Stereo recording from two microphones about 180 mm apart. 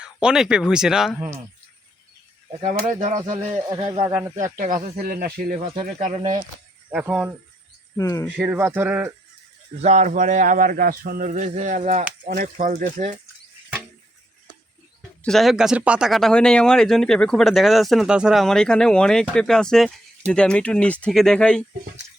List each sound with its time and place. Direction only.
0.0 s speech: 5° right (ahead or behind)
3.0 s a sound: 45° right (ahead or behind)
3.3 s speech: 30° right (ahead or behind)
4.1 s speech: 15° right (ahead or behind)
4.5 s a sound: 45° right (ahead or behind)
6.9 s speech: 5° right (ahead or behind)
7.9 s speech: 20° left (ahead or behind)
8.4 s speech: 10° right (ahead or behind)
9.8 s a sound: 40° right (ahead or behind)
15.2 s speech: centre (ahead or behind)